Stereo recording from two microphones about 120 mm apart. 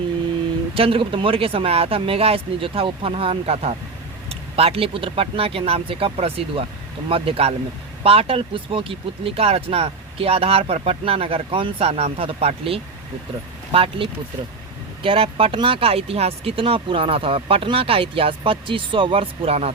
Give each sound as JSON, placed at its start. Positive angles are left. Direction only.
{"t": 0.7, "sound": "speech", "side_deg": -50}